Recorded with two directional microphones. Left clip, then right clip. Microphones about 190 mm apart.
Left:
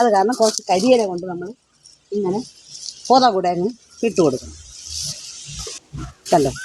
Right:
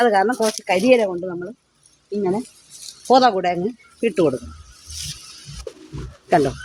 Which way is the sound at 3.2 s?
20° left (ahead or behind).